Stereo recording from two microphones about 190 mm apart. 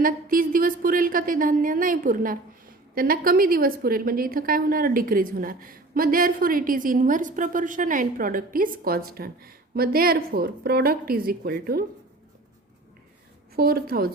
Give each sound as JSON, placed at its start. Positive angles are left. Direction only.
{"t": 0.0, "sound": "a woman's voice", "side_deg": -50}
{"t": 13.6, "sound": "a woman's voice", "side_deg": -50}